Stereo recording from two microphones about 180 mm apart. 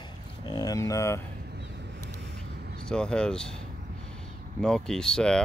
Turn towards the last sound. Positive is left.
turn(degrees=5)  # may be behind; listen again after turning